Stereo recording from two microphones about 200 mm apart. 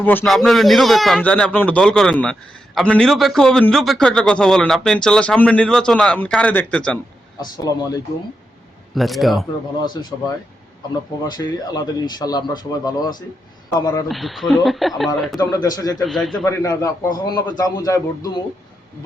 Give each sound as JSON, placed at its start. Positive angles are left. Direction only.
{"t": 0.0, "sound": "a man's voice", "side_deg": 10}
{"t": 7.6, "sound": "a man's voice", "side_deg": 15}
{"t": 9.0, "sound": "a man's voice", "side_deg": 0}
{"t": 9.7, "sound": "a man's voice", "side_deg": 20}
{"t": 14.1, "sound": "a man's voice", "side_deg": 0}
{"t": 15.4, "sound": "speech", "side_deg": 20}
{"t": 16.0, "sound": "a man's voice", "side_deg": 0}
{"t": 16.4, "sound": "a man's voice", "side_deg": 15}